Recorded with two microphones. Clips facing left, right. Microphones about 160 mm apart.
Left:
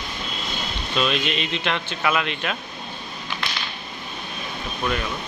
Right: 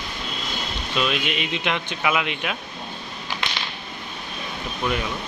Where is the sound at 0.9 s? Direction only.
5° right (ahead or behind).